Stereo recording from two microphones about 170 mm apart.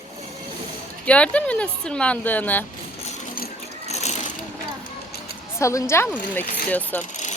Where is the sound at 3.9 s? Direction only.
40° left (ahead or behind).